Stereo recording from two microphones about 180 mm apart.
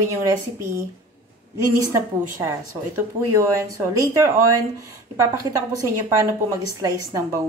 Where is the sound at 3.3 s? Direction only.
15° right (ahead or behind).